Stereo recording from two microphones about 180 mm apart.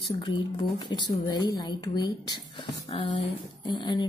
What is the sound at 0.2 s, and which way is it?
A woman's voice, 25° left (ahead or behind).